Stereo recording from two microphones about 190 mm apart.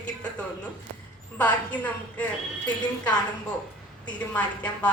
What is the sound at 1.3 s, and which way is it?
Speech, 5° left (ahead or behind).